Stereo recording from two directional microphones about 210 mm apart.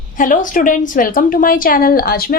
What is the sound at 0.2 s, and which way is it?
A woman's voice, 40° left (ahead or behind).